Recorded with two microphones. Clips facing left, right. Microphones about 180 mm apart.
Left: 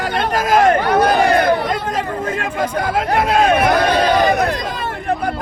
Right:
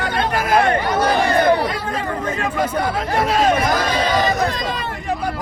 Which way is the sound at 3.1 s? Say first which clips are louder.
Left 2 dB; 60° left (ahead or behind).